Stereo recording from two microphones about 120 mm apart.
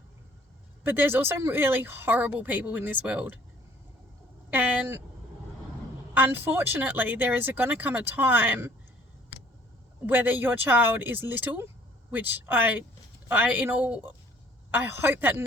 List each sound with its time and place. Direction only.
0.9 s speech: 15° right (ahead or behind)
4.5 s speech: 15° right (ahead or behind)
6.1 s speech: 15° right (ahead or behind)
10.1 s speech: 15° right (ahead or behind)